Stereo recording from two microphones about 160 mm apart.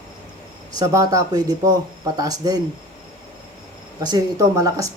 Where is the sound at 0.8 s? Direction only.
20° right (ahead or behind).